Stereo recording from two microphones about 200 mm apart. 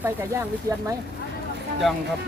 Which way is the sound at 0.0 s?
10° right (ahead or behind).